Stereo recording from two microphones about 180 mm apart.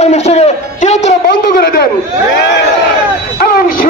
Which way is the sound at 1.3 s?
70° left (ahead or behind).